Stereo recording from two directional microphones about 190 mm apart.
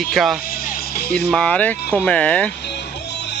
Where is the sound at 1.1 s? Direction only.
5° left (ahead or behind).